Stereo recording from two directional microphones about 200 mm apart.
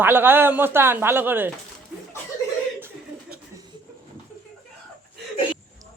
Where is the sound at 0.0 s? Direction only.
10° right (ahead or behind).